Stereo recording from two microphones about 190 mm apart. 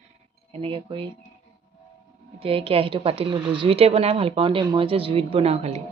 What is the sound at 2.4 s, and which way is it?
Speech, 30° right (ahead or behind).